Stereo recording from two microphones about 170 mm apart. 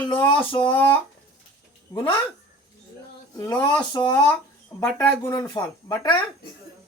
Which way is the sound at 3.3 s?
25° left (ahead or behind).